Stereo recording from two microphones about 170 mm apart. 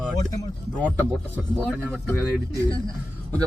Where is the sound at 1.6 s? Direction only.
5° right (ahead or behind).